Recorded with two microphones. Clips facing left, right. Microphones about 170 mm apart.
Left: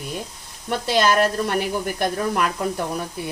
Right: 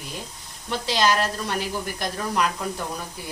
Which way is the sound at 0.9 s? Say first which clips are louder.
Left 4 dB; 55° left (ahead or behind).